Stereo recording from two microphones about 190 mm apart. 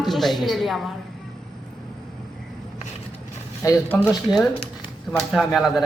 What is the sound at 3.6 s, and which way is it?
Speech, 15° left (ahead or behind).